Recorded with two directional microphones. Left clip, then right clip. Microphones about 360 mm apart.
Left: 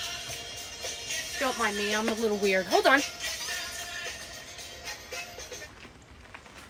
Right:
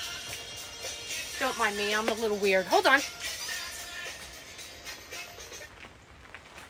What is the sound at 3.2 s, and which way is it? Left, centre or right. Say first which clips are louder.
Music: left 2 dB; left.